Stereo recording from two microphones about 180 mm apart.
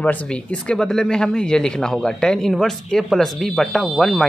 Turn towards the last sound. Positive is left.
turn(degrees=0)  # may be behind; listen again after turning